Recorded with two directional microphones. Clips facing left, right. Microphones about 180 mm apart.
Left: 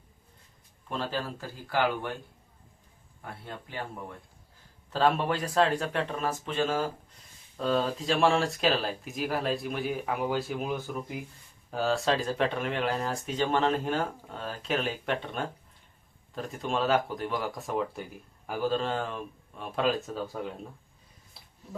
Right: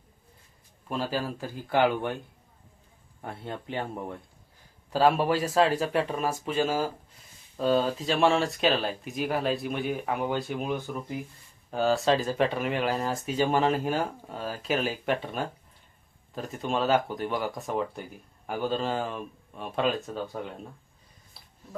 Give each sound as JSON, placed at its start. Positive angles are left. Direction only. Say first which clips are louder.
{"t": 0.9, "sound": "speech", "louder": "right 3 dB", "side_deg": -10}
{"t": 3.2, "sound": "speech", "louder": "right 5 dB", "side_deg": -25}
{"t": 4.9, "sound": "speech", "louder": "right 3 dB", "side_deg": -10}